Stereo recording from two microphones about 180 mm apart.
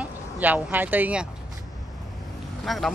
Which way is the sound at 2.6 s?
Centre (ahead or behind).